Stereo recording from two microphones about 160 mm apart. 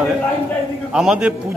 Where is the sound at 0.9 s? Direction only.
5° right (ahead or behind).